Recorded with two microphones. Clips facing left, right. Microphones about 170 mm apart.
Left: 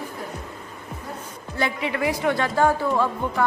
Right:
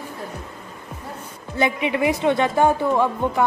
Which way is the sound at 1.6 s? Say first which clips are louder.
Right 4 dB; 20° right (ahead or behind).